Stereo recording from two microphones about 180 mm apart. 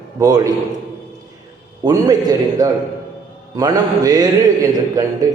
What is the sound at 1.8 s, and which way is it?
A man's voice, 20° right (ahead or behind).